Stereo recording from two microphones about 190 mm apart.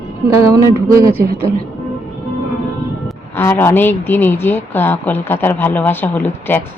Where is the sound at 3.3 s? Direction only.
10° left (ahead or behind).